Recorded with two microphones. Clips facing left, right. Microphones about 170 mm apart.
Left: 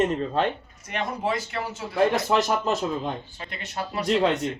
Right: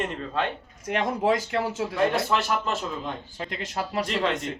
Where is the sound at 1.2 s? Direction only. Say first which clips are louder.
Right 4 dB; 90° right.